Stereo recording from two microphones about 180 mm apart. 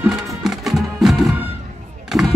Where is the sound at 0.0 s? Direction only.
5° right (ahead or behind).